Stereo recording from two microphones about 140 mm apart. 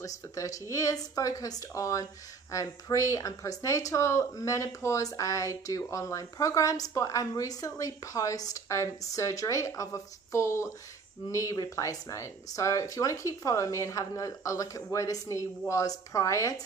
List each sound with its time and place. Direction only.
0.0 s speech: 25° left (ahead or behind)